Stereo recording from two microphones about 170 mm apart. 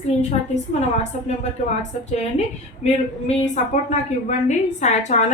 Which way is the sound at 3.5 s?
45° left (ahead or behind).